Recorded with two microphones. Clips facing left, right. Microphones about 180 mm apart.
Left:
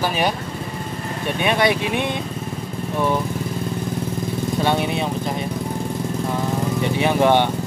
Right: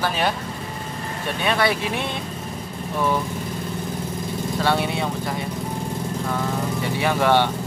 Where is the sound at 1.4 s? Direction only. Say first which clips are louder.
Left 2 dB; 20° left (ahead or behind).